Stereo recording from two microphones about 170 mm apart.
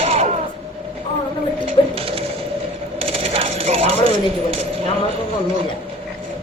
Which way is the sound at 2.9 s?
35° right (ahead or behind).